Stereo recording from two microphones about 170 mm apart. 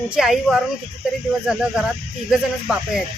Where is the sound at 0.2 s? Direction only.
Centre (ahead or behind).